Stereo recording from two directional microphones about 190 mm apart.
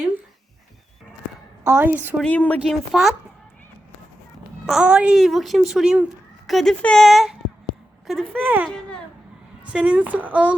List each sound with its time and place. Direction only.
1.6 s speech: 10° right (ahead or behind)
2.2 s speech: 5° left (ahead or behind)
4.6 s speech: 5° right (ahead or behind)
8.4 s speech: 10° right (ahead or behind)